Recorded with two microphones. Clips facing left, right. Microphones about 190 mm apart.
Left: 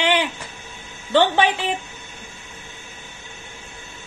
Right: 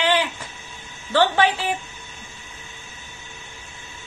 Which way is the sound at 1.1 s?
20° left (ahead or behind).